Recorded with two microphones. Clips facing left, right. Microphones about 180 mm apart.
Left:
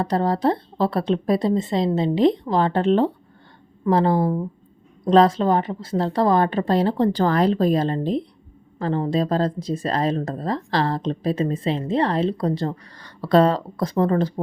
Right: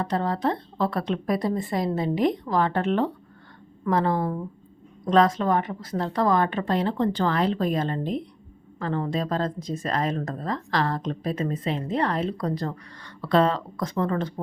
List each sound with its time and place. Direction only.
0.0 s speech: 35° left (ahead or behind)